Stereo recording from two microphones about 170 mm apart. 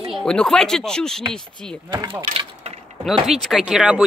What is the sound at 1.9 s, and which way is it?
Speech, 25° right (ahead or behind).